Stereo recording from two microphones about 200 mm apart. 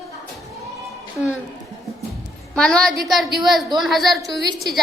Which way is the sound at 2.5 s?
5° left (ahead or behind).